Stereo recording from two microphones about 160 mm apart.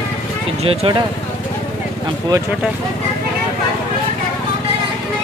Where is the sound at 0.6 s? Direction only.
40° right (ahead or behind).